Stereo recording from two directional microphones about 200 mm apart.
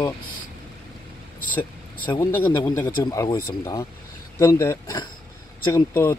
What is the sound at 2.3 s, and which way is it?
Speech, 10° left (ahead or behind).